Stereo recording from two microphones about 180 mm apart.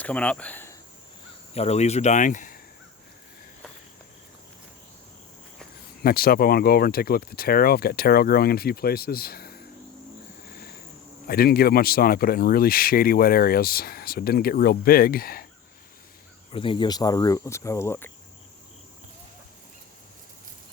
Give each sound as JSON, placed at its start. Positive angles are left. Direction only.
{"t": 0.0, "sound": "speech", "side_deg": 5}
{"t": 1.5, "sound": "speech", "side_deg": 35}
{"t": 6.0, "sound": "speech", "side_deg": 55}
{"t": 11.3, "sound": "speech", "side_deg": 55}
{"t": 16.5, "sound": "speech", "side_deg": 30}